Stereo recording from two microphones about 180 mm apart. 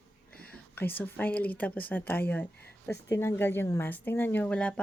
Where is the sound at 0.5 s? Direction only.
10° left (ahead or behind).